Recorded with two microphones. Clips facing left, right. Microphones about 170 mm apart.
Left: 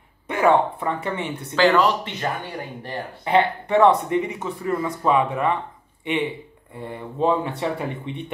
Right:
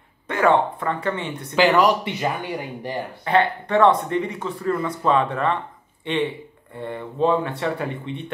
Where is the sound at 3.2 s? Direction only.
15° left (ahead or behind).